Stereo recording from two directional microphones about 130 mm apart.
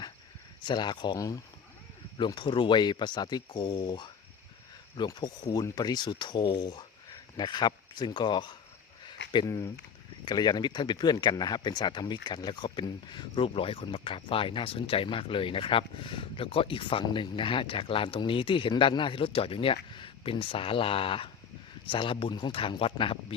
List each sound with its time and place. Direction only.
0.6 s speech: 35° left (ahead or behind)
9.0 s a sound: 35° left (ahead or behind)
9.5 s speech: 25° left (ahead or behind); by 23.1 s 40° left (ahead or behind)